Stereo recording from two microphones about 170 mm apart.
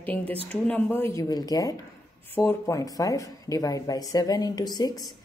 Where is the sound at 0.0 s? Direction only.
10° left (ahead or behind).